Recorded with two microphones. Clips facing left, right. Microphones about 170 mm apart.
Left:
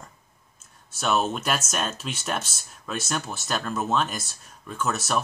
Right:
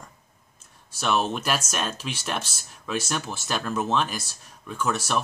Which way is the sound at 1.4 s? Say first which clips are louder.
Even; centre (ahead or behind).